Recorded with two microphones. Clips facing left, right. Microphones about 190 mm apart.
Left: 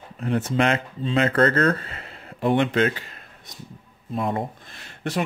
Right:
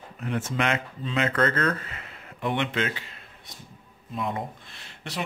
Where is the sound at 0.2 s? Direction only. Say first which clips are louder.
Left 6 dB; 35° left (ahead or behind).